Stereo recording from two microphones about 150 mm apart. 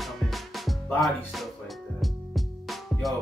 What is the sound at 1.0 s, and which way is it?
Speech, centre (ahead or behind).